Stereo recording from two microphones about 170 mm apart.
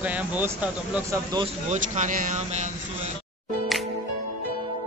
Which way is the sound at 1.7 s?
45° right (ahead or behind).